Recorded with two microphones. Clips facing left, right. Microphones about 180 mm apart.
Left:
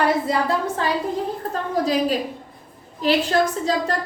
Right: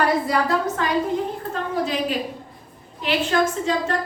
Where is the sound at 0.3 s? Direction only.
25° left (ahead or behind).